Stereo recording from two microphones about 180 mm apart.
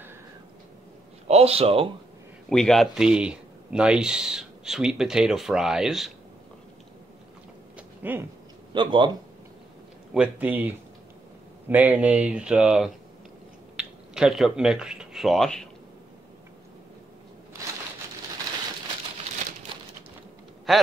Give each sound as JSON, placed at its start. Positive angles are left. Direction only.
{"t": 1.2, "sound": "a man's voice", "side_deg": -35}
{"t": 2.5, "sound": "speech", "side_deg": 5}
{"t": 7.7, "sound": "a sound", "side_deg": -10}
{"t": 8.7, "sound": "speech", "side_deg": -25}
{"t": 10.1, "sound": "speech", "side_deg": -10}
{"t": 20.7, "sound": "speech", "side_deg": 0}